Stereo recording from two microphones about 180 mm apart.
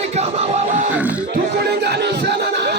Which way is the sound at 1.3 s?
65° right (ahead or behind).